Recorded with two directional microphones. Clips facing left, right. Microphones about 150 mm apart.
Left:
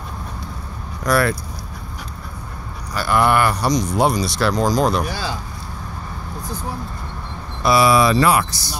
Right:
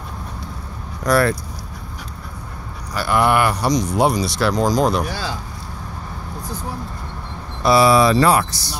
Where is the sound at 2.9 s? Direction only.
15° right (ahead or behind).